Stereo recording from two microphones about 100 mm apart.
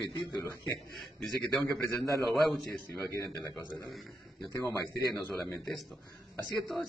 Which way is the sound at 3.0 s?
30° left (ahead or behind).